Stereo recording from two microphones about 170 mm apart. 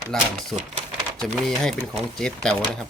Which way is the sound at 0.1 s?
Centre (ahead or behind).